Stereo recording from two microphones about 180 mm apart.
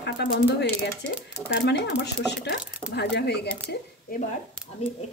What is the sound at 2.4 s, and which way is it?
Speech, 65° left (ahead or behind).